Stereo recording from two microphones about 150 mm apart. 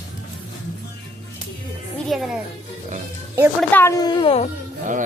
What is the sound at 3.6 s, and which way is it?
Speech, 15° left (ahead or behind).